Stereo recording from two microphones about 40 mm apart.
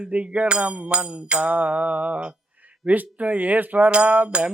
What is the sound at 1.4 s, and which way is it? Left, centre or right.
Music, right.